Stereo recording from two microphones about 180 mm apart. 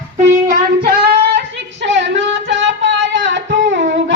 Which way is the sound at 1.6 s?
80° right.